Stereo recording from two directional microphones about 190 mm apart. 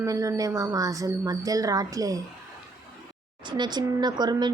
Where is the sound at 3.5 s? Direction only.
25° right (ahead or behind).